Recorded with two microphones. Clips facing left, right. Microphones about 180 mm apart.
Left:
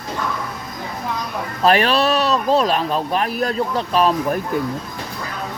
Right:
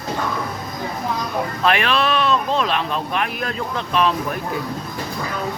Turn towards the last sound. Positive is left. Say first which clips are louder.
# left 3 dB
turn(degrees=40)  # may be behind; listen again after turning